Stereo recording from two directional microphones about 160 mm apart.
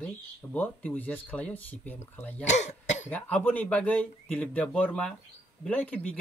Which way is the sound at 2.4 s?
45° left (ahead or behind).